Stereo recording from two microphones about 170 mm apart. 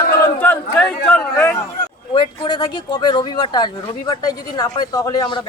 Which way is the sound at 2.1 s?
25° left (ahead or behind).